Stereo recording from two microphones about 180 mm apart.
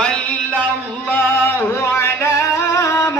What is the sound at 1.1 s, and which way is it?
Singing, 10° left (ahead or behind).